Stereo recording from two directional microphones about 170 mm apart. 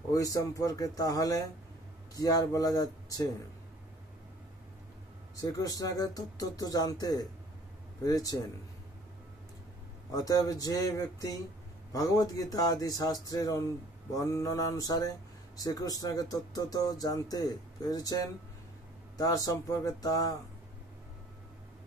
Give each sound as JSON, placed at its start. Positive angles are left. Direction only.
{"t": 0.1, "sound": "speech", "side_deg": 20}
{"t": 5.3, "sound": "speech", "side_deg": 20}
{"t": 10.1, "sound": "speech", "side_deg": 20}